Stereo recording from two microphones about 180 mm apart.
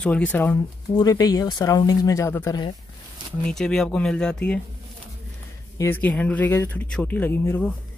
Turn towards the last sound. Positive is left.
turn(degrees=10)  # may be behind; listen again after turning